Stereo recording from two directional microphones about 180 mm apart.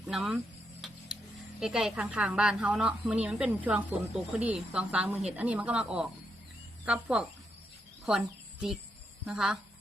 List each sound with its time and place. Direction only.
0.0 s a woman's voice: centre (ahead or behind)
9.2 s a woman's voice: 5° right (ahead or behind)